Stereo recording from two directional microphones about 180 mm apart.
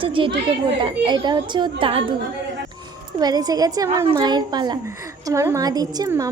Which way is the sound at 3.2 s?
20° right (ahead or behind).